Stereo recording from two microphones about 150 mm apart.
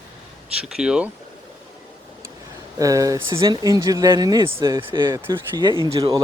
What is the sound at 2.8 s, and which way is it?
Speech, 25° right (ahead or behind).